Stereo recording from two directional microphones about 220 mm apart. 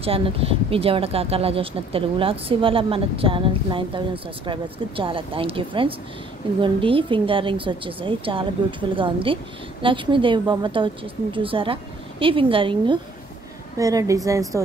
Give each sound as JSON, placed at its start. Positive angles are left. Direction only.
{"t": 0.0, "sound": "a woman's voice", "side_deg": -25}